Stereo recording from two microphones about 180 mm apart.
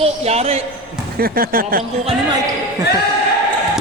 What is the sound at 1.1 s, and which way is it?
Speech, 55° right (ahead or behind).